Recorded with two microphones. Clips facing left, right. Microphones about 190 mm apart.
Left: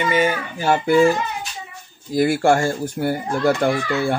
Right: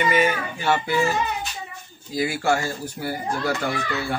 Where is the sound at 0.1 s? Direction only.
35° left (ahead or behind).